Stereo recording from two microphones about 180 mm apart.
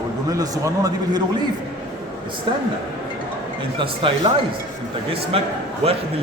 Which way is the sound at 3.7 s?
25° right (ahead or behind).